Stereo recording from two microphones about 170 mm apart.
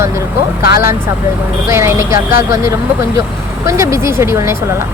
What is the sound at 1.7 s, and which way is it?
Speech, 15° right (ahead or behind).